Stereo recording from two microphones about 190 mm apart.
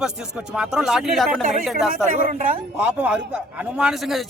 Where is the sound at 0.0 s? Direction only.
5° right (ahead or behind).